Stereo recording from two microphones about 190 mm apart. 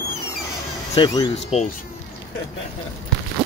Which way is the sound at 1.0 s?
30° left (ahead or behind).